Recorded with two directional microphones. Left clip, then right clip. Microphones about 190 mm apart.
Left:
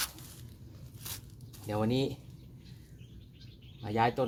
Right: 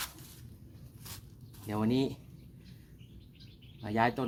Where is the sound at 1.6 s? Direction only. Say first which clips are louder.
Even; 15° right (ahead or behind).